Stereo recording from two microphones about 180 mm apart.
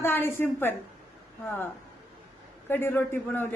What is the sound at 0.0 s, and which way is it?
Speech, 10° left (ahead or behind).